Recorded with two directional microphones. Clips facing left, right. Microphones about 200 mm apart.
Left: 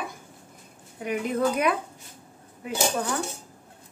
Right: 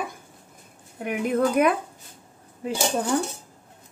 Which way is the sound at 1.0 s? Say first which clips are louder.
Right 2 dB; 50° right (ahead or behind).